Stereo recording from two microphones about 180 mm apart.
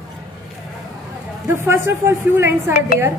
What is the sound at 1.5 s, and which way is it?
A woman's voice, 15° right (ahead or behind).